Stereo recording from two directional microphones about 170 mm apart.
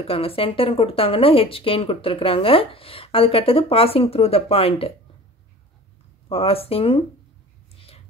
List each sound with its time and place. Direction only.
0.0 s speech: 35° left (ahead or behind)
6.2 s speech: 35° left (ahead or behind)